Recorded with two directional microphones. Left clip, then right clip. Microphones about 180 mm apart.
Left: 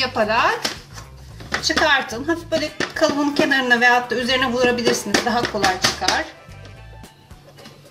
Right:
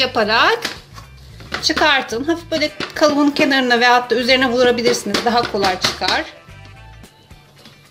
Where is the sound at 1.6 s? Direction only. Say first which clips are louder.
Right 3 dB; 35° right (ahead or behind).